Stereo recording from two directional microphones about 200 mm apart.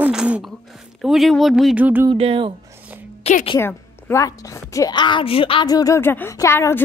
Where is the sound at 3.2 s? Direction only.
30° left (ahead or behind).